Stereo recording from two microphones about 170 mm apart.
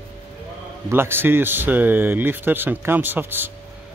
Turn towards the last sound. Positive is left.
turn(degrees=-10)  # may be behind; listen again after turning